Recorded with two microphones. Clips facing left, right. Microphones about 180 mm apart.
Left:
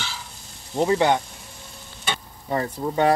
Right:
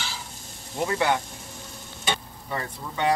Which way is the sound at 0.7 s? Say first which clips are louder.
Left 5 dB; 25° left (ahead or behind).